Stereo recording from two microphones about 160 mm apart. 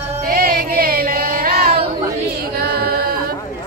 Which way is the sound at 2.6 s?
80° right.